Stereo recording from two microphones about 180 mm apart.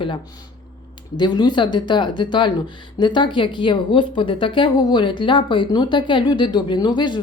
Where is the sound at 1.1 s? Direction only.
25° left (ahead or behind).